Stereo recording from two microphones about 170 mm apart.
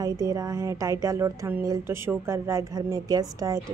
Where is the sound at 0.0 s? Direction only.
20° right (ahead or behind).